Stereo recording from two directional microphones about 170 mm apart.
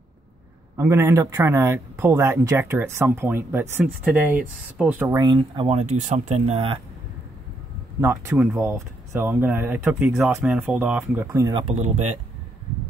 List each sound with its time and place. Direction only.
0.7 s a man's voice: 15° right (ahead or behind)
5.2 s speech: 25° right (ahead or behind)
5.8 s speech: 45° right (ahead or behind)
8.0 s a man's voice: 15° right (ahead or behind)
11.2 s speech: 20° right (ahead or behind)
11.6 s speech: 40° right (ahead or behind)